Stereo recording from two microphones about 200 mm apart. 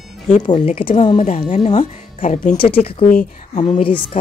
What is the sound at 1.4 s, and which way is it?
Speech, 35° left (ahead or behind).